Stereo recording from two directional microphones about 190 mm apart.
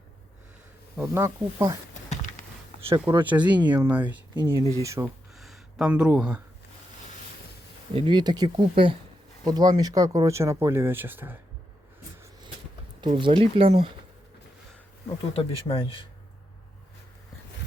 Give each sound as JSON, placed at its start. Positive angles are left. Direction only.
{"t": 0.9, "sound": "speech", "side_deg": -15}
{"t": 3.2, "sound": "speech", "side_deg": -10}
{"t": 5.3, "sound": "a sound", "side_deg": 0}
{"t": 7.9, "sound": "speech", "side_deg": -25}
{"t": 13.0, "sound": "speech", "side_deg": -25}
{"t": 15.3, "sound": "speech", "side_deg": 30}